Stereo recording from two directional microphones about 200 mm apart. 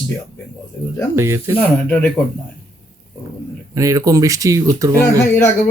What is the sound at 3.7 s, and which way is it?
Speech, 15° right (ahead or behind).